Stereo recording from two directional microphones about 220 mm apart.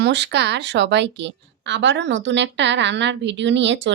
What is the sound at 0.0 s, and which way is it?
A woman's voice, 50° right (ahead or behind).